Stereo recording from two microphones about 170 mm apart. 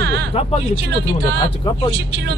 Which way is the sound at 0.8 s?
80° right.